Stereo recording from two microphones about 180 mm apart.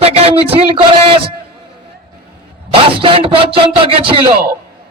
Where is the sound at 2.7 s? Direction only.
30° right (ahead or behind).